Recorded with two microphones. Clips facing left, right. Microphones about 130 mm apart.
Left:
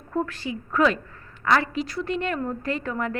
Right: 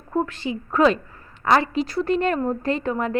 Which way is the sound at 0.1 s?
20° right (ahead or behind).